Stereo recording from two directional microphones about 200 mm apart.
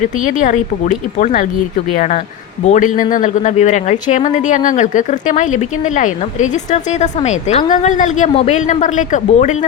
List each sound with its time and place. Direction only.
0.0 s a woman's voice: 40° left (ahead or behind)
2.6 s a woman's voice: 40° left (ahead or behind)